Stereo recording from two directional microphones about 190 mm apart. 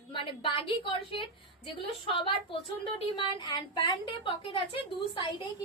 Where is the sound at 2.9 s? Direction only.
25° left (ahead or behind).